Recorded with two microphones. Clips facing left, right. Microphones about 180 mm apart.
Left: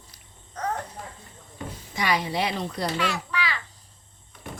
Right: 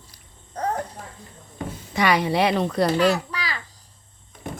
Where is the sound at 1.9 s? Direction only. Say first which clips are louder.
Right 6 dB; 65° right (ahead or behind).